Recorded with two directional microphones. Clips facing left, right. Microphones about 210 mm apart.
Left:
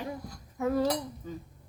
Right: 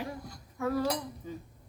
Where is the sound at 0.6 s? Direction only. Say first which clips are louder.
Left 2 dB; 20° left (ahead or behind).